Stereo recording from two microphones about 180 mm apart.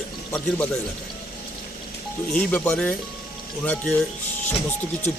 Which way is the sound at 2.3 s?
5° left (ahead or behind).